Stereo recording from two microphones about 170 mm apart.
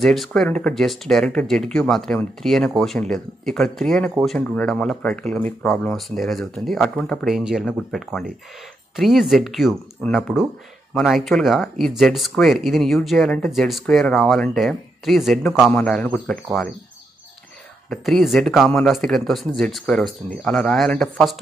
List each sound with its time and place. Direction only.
0.0 s speech: centre (ahead or behind)
17.8 s speech: centre (ahead or behind)